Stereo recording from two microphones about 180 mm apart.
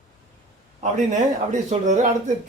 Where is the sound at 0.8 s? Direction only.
40° right (ahead or behind).